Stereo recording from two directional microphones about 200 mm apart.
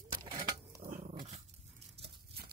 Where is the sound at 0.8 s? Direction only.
40° right (ahead or behind).